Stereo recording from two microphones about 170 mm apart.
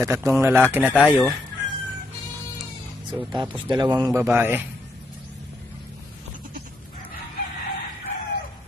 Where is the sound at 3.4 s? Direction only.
25° right (ahead or behind).